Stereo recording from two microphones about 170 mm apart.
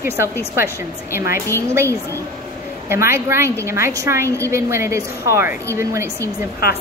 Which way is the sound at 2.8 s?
15° right (ahead or behind).